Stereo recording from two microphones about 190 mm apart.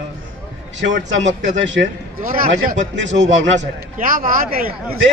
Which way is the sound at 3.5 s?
45° right (ahead or behind).